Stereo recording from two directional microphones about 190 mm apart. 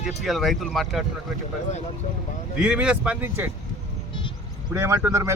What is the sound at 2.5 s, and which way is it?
Speech, 5° right (ahead or behind).